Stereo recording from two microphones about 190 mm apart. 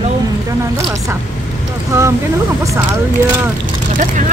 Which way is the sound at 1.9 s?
15° right (ahead or behind).